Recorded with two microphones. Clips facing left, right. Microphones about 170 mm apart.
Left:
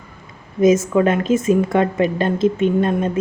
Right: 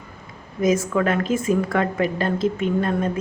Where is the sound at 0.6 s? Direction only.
20° left (ahead or behind).